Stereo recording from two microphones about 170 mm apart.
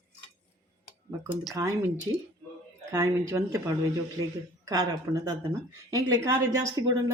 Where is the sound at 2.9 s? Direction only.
15° right (ahead or behind).